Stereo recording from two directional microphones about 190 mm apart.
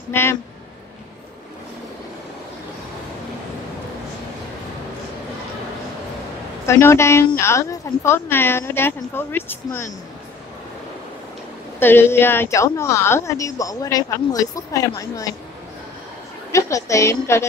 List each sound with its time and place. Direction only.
0.1 s a woman's voice: 10° left (ahead or behind)
6.6 s a woman's voice: 15° left (ahead or behind)
11.8 s a woman's voice: 10° left (ahead or behind)
16.5 s a woman's voice: 15° left (ahead or behind)